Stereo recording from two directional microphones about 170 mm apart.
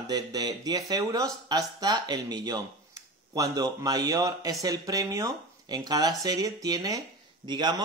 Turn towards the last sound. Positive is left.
turn(degrees=-25)  # may be behind; listen again after turning